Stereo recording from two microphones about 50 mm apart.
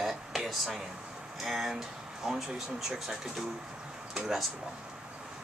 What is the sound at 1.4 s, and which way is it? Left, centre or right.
Speech, centre.